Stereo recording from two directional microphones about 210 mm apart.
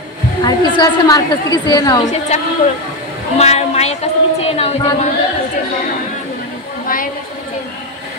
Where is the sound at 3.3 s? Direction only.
30° left (ahead or behind).